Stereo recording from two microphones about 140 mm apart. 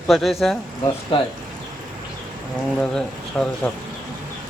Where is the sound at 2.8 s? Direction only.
5° left (ahead or behind).